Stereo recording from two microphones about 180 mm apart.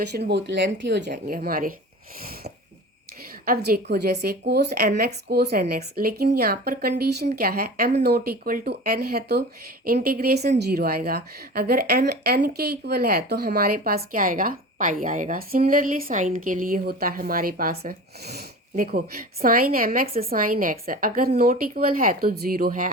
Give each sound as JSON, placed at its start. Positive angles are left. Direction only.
{"t": 0.1, "sound": "a woman's voice", "side_deg": -65}
{"t": 3.4, "sound": "a woman's voice", "side_deg": -55}